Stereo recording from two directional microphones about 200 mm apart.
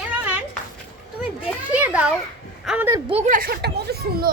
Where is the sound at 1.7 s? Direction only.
5° right (ahead or behind).